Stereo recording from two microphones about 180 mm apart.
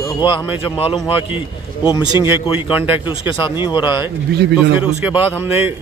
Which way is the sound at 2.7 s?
10° right (ahead or behind).